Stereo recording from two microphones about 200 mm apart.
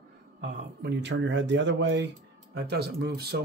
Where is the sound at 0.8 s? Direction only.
60° right (ahead or behind).